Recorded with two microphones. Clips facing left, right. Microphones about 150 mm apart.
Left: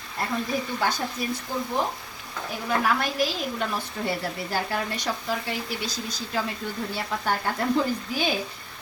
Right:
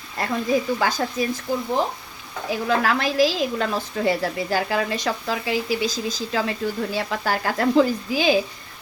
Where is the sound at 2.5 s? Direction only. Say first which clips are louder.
Right 4 dB; 90° right.